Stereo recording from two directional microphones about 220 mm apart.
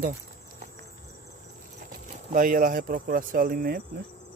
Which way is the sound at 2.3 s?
40° right (ahead or behind).